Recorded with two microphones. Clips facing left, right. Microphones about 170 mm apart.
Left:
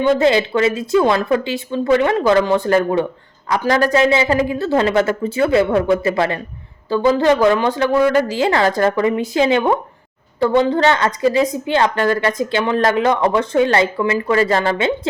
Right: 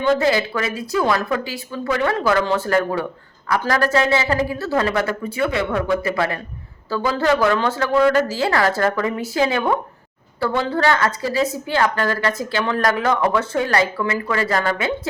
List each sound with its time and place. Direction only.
0.0 s a woman's voice: 20° left (ahead or behind)